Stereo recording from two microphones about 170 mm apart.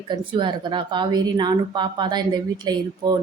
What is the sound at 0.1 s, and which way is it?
Speech, 25° right (ahead or behind).